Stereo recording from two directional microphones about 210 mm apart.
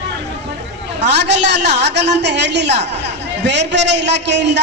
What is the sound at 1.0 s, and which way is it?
A woman's voice, 55° right (ahead or behind).